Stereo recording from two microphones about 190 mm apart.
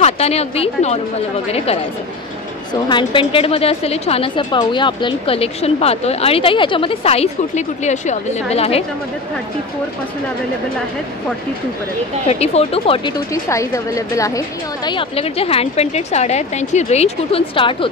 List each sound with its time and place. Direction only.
0.0 s a woman's voice: 35° left (ahead or behind)
2.7 s a woman's voice: 25° left (ahead or behind)
12.3 s a woman's voice: 30° left (ahead or behind)
13.3 s a woman's voice: 15° left (ahead or behind)
14.9 s a woman's voice: 30° left (ahead or behind)